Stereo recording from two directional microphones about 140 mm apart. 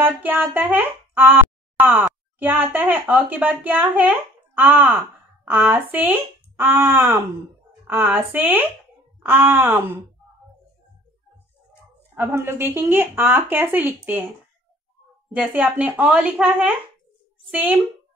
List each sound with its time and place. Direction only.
0.0 s speech: 10° right (ahead or behind)
12.2 s speech: 15° right (ahead or behind)
15.3 s speech: 10° right (ahead or behind)